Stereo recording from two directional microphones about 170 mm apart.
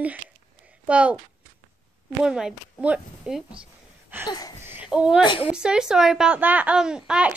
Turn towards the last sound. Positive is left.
turn(degrees=-5)  # may be behind; listen again after turning